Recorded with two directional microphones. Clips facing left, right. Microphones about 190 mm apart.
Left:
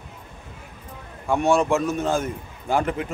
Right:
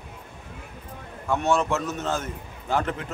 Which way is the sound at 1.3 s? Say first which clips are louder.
Left 4 dB; 10° left (ahead or behind).